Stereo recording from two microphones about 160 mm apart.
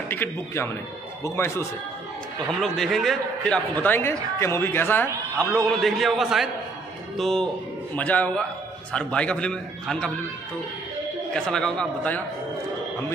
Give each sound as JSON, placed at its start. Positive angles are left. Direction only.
{"t": 0.1, "sound": "a man's voice", "side_deg": 15}
{"t": 2.6, "sound": "a man's voice", "side_deg": 0}
{"t": 5.7, "sound": "a man's voice", "side_deg": 0}
{"t": 11.3, "sound": "a man's voice", "side_deg": 5}